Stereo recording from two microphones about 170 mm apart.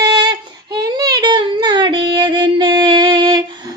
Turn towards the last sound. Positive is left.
turn(degrees=-30)  # may be behind; listen again after turning